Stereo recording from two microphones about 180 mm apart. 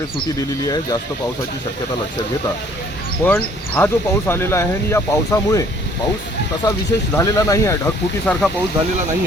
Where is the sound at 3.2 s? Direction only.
10° left (ahead or behind).